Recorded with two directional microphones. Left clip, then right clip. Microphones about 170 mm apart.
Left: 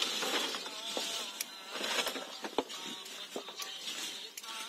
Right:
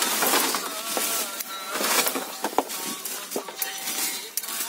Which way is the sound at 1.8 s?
70° right (ahead or behind).